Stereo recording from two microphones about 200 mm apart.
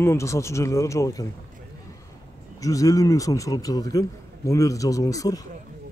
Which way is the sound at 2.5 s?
15° left (ahead or behind).